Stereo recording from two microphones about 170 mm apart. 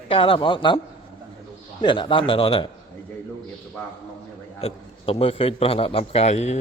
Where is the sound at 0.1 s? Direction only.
30° left (ahead or behind).